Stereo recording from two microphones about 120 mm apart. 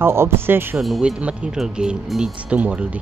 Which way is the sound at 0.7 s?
5° right (ahead or behind).